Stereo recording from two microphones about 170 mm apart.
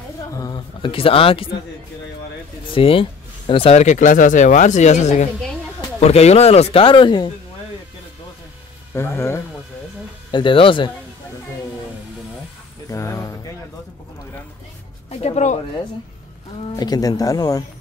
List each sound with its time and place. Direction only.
0.3 s speech: 20° left (ahead or behind)
2.7 s speech: 30° left (ahead or behind)
8.9 s speech: 15° left (ahead or behind)
10.3 s speech: 30° left (ahead or behind)
12.9 s a sound: 20° left (ahead or behind)
15.0 s speech: 40° left (ahead or behind)
16.6 s speech: 25° left (ahead or behind)